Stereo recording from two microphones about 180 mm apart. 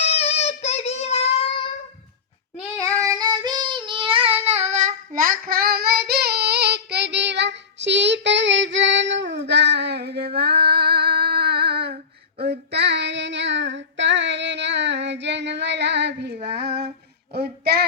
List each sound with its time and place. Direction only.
0.0 s child singing: 35° left (ahead or behind)
3.0 s child singing: 20° right (ahead or behind); by 16.9 s 70° right (ahead or behind)
17.3 s a sound: 60° right (ahead or behind)